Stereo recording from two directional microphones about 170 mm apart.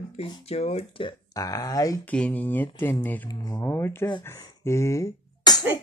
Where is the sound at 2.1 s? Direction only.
10° left (ahead or behind).